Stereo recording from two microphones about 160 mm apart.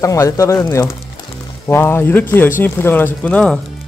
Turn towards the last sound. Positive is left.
turn(degrees=5)  # may be behind; listen again after turning